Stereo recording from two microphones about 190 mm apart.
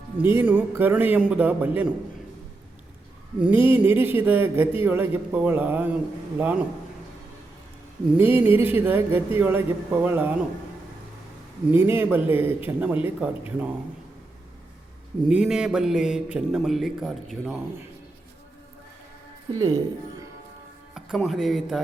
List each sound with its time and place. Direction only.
0.3 s a man's voice: 10° right (ahead or behind)
3.3 s a man's voice: 10° right (ahead or behind)
8.1 s a man's voice: 10° right (ahead or behind)
11.7 s a man's voice: 10° right (ahead or behind)
15.3 s a man's voice: 5° right (ahead or behind)
19.5 s speech: 20° right (ahead or behind)
20.9 s speech: centre (ahead or behind)